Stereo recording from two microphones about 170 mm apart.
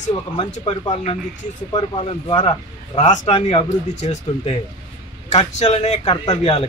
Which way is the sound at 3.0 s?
45° left (ahead or behind).